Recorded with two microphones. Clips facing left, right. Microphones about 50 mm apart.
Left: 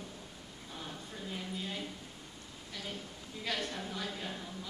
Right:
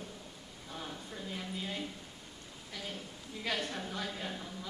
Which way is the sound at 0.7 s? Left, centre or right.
Centre.